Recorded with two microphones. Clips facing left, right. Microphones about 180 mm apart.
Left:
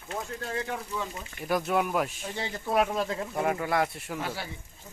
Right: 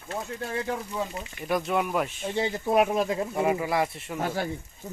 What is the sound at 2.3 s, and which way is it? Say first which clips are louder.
Speech: right 6 dB; 20° right (ahead or behind).